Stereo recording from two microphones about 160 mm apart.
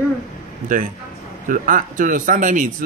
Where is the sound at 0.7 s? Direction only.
60° right (ahead or behind).